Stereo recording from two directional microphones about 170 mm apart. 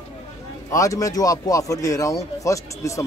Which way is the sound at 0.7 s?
20° left (ahead or behind).